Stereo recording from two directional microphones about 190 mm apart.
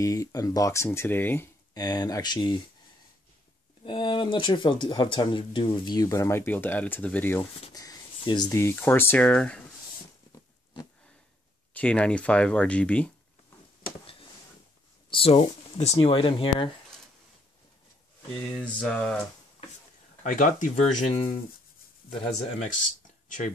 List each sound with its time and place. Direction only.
0.0 s speech: 20° left (ahead or behind)
3.8 s speech: 25° left (ahead or behind); by 9.6 s 5° left (ahead or behind)
11.7 s speech: 5° left (ahead or behind)
15.0 s speech: 30° left (ahead or behind)
18.5 s speech: 5° left (ahead or behind)
20.2 s speech: 40° left (ahead or behind)